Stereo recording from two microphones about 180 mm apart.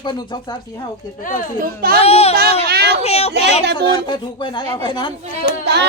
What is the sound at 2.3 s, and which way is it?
Speech, 60° right (ahead or behind).